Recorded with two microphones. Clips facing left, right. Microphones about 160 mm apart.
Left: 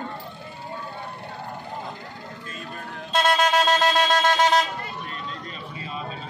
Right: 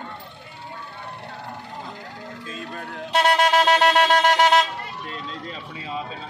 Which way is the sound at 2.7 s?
65° right (ahead or behind).